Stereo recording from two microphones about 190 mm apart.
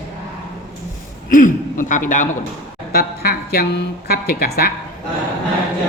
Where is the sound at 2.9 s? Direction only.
55° left (ahead or behind).